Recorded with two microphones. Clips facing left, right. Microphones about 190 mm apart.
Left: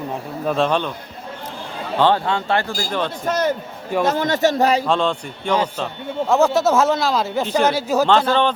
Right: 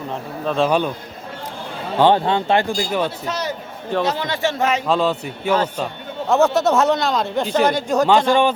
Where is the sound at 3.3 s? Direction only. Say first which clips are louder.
Left 5 dB; 50° left (ahead or behind); by 4.8 s 35° left (ahead or behind).